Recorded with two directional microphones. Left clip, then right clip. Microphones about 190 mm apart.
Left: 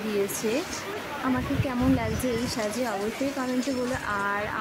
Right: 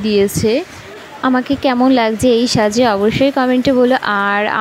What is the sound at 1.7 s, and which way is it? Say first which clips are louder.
A woman's voice: right 16 dB; 45° right (ahead or behind).